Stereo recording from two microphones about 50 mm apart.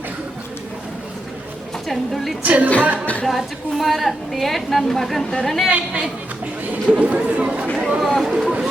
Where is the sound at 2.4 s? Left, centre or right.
Right.